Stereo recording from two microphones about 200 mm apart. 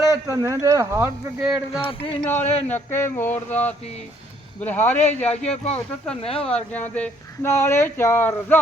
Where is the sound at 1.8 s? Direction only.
25° left (ahead or behind).